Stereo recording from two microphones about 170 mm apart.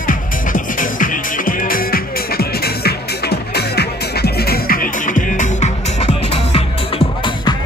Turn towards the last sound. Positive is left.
turn(degrees=40)  # may be behind; listen again after turning